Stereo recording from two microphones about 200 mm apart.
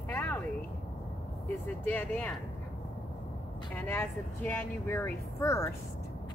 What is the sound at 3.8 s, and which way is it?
Speech, 10° left (ahead or behind).